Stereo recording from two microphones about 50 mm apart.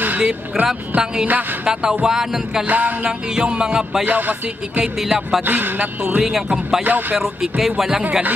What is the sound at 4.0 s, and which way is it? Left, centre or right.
Speech, right.